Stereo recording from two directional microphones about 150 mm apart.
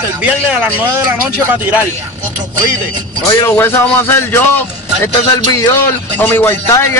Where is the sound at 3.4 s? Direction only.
15° left (ahead or behind).